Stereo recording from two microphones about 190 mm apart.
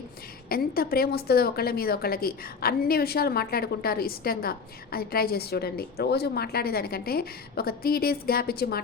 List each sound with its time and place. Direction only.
0.4 s a woman's voice: 50° left (ahead or behind)